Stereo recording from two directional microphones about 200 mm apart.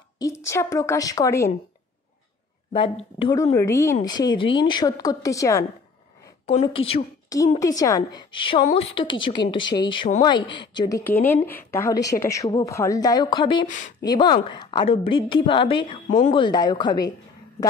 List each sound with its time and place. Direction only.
0.2 s a woman's voice: 15° left (ahead or behind)
2.7 s speech: 25° left (ahead or behind)
6.4 s speech: 30° left (ahead or behind)
7.5 s a woman's voice: 15° left (ahead or behind)